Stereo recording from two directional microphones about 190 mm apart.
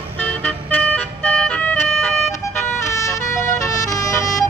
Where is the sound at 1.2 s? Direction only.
5° left (ahead or behind).